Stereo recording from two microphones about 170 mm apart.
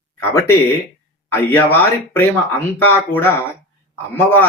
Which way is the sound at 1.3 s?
10° left (ahead or behind).